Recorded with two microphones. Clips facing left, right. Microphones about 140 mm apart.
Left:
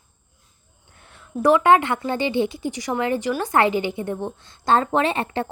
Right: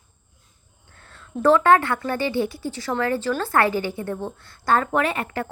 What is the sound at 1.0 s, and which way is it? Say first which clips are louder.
A woman's voice: even; 15° left (ahead or behind).